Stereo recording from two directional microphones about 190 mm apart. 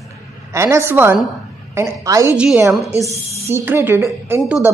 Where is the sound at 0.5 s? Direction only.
15° right (ahead or behind).